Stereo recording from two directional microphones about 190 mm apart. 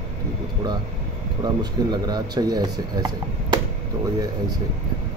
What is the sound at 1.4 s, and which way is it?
A man's voice, 20° right (ahead or behind).